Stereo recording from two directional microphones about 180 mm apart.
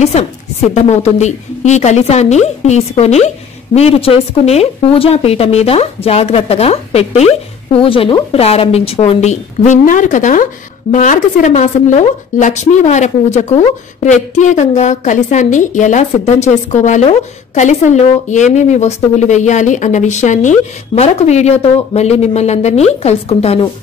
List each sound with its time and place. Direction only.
0.0 s a woman's voice: 35° left (ahead or behind)